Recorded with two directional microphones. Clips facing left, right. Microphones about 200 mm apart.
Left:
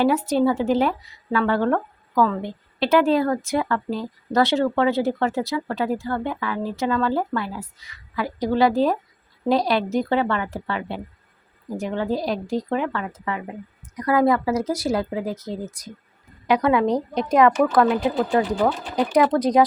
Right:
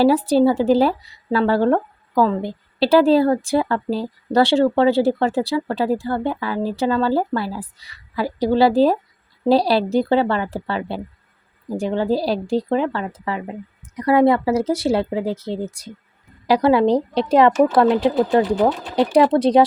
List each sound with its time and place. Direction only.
0.0 s speech: 35° right (ahead or behind)